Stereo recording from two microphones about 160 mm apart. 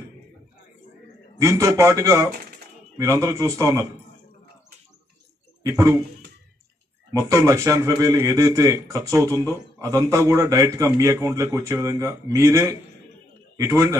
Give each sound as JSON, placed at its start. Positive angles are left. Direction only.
{"t": 1.4, "sound": "a man's voice", "side_deg": -20}
{"t": 5.6, "sound": "speech", "side_deg": -20}
{"t": 7.2, "sound": "a man's voice", "side_deg": -20}